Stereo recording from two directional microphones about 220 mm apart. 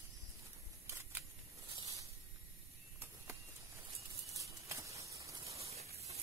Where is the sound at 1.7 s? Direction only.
25° right (ahead or behind).